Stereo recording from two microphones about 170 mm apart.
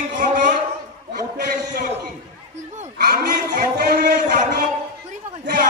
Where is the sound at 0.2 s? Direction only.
55° right (ahead or behind).